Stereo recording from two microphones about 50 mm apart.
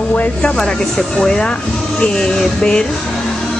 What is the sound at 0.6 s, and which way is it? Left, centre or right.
Speech, centre.